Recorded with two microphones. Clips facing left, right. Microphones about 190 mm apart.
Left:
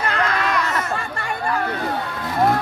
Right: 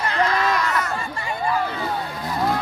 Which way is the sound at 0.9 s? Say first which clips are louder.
Left 1 dB; 65° left (ahead or behind).